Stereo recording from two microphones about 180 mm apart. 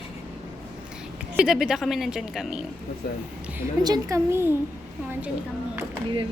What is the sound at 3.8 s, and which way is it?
Speech, 20° right (ahead or behind).